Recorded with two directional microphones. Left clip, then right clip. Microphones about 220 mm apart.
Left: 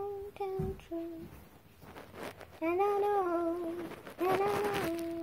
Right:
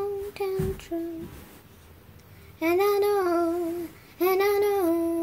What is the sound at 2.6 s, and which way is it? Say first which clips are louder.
Child singing: right 8 dB; 30° right (ahead or behind).